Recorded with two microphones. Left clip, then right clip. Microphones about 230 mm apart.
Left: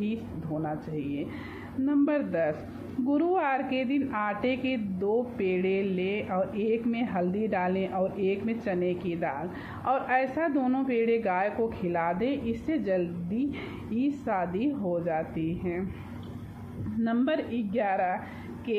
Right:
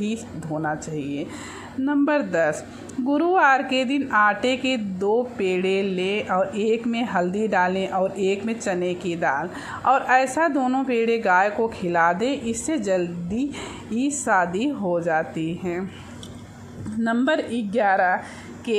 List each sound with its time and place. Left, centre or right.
0.0 s a woman's voice: centre
17.0 s a woman's voice: right